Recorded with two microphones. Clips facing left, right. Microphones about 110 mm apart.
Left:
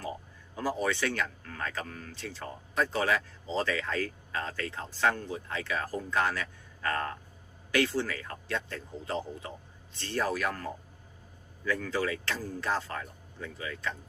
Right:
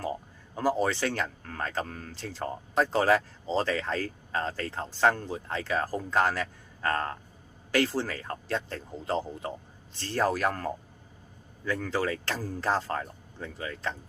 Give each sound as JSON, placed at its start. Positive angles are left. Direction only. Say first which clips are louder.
{"t": 0.5, "sound": "speech", "louder": "right 4 dB", "side_deg": -35}